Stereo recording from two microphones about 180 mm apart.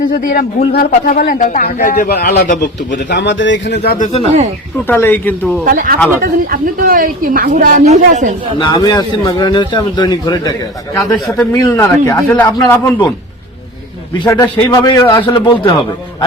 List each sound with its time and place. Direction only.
0.1 s a man's voice: 50° left (ahead or behind); by 3.9 s 80° left
4.0 s speech: 35° left (ahead or behind)
4.9 s a man's voice: 10° left (ahead or behind)
5.6 s speech: 50° right (ahead or behind)
8.5 s a man's voice: 25° left (ahead or behind)
10.9 s a man's voice: 5° left (ahead or behind)
11.5 s a man's voice: 15° left (ahead or behind)